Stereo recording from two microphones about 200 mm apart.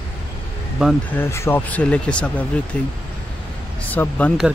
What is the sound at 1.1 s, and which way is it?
Speech, 10° left (ahead or behind).